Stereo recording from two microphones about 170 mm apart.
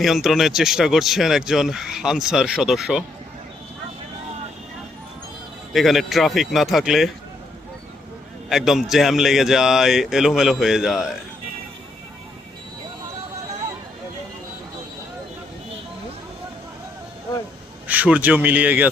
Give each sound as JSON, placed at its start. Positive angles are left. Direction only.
{"t": 0.0, "sound": "speech", "side_deg": 0}
{"t": 5.7, "sound": "speech", "side_deg": 0}
{"t": 8.4, "sound": "speech", "side_deg": 0}
{"t": 17.8, "sound": "a man's voice", "side_deg": -10}